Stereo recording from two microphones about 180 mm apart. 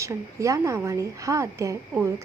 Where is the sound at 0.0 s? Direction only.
15° right (ahead or behind).